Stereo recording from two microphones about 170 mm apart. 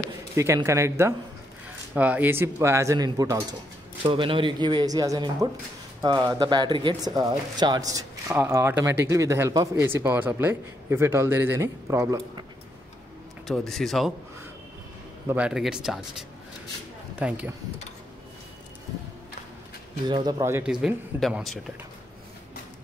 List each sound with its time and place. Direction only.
0.4 s speech: 15° right (ahead or behind)
4.0 s speech: 30° right (ahead or behind)
13.5 s speech: centre (ahead or behind)
15.2 s speech: 5° right (ahead or behind)
20.1 s speech: 25° right (ahead or behind)
20.6 s speech: 5° right (ahead or behind)